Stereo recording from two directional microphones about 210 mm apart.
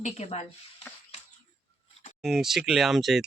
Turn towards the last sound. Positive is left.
turn(degrees=0)  # may be behind; listen again after turning